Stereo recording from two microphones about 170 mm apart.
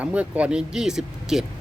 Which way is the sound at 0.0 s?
10° right (ahead or behind).